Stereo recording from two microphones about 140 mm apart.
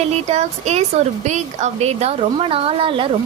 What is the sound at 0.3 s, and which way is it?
A woman's voice, 55° right (ahead or behind).